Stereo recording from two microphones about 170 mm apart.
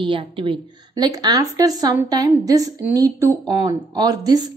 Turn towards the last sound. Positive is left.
turn(degrees=-25)  # may be behind; listen again after turning